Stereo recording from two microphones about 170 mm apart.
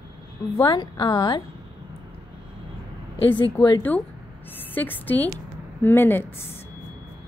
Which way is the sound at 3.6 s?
10° left (ahead or behind).